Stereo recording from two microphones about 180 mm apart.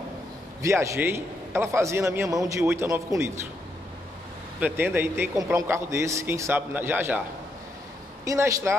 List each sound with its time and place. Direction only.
0.6 s a man's voice: 15° right (ahead or behind)
4.6 s a man's voice: 10° right (ahead or behind)
8.3 s a man's voice: 15° right (ahead or behind)